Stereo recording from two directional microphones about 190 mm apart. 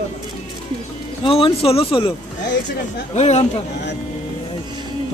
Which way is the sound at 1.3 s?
30° left (ahead or behind).